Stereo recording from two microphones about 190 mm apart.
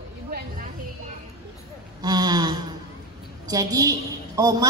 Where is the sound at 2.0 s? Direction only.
20° right (ahead or behind).